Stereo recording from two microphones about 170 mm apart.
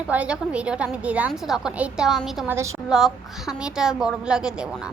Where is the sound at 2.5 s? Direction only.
15° right (ahead or behind).